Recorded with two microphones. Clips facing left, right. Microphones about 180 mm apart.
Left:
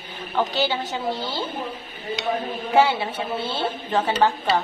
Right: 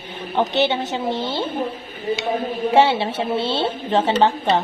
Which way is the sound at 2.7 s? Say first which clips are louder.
Right 2 dB; 25° right (ahead or behind).